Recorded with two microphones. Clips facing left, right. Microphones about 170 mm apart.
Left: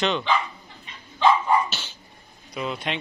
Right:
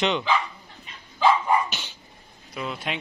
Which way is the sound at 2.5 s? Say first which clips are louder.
Left 2 dB; centre (ahead or behind).